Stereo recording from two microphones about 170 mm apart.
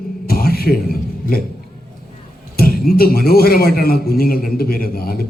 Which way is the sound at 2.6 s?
60° left (ahead or behind).